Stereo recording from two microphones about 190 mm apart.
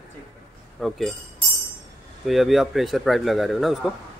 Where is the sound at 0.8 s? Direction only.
Centre (ahead or behind).